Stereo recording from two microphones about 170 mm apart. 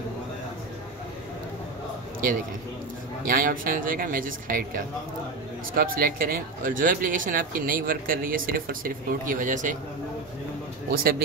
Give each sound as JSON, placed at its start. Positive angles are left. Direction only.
{"t": 3.3, "sound": "speech", "side_deg": -55}
{"t": 10.9, "sound": "speech", "side_deg": -65}